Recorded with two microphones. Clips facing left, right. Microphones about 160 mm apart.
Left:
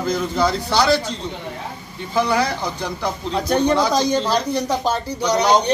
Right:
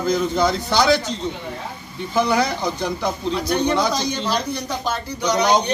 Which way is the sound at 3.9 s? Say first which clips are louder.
Left 5 dB; 45° left (ahead or behind).